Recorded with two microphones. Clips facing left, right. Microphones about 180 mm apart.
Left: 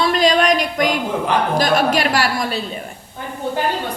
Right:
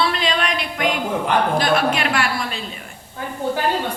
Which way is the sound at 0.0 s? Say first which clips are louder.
Left 6 dB; 40° left (ahead or behind).